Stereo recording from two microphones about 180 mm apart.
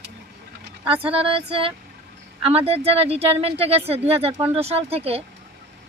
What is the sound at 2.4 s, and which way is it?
Speech, 35° right (ahead or behind).